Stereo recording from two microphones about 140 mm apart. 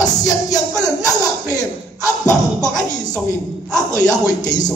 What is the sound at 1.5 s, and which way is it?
Speech, 25° left (ahead or behind).